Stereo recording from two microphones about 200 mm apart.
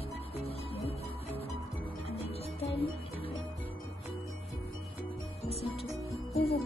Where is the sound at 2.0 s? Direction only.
30° left (ahead or behind).